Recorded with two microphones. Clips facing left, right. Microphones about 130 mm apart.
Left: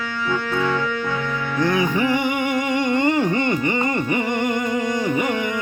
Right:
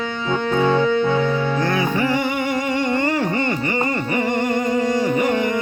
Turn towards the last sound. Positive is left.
turn(degrees=20)  # may be behind; listen again after turning